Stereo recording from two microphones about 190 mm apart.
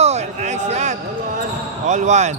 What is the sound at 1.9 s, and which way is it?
Speech, 40° right (ahead or behind).